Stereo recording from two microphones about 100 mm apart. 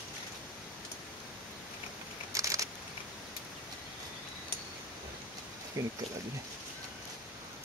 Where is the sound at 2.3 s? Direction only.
35° right (ahead or behind).